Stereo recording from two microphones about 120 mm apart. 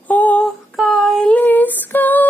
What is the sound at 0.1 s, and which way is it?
Female singing, 15° left (ahead or behind).